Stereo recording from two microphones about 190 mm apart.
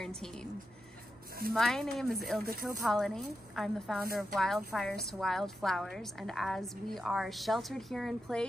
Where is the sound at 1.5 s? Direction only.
Centre (ahead or behind).